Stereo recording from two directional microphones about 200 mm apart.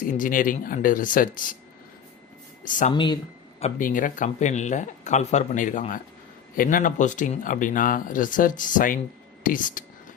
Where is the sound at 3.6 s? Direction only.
35° left (ahead or behind).